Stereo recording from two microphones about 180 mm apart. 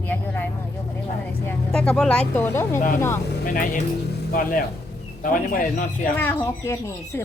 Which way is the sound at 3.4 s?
50° left (ahead or behind).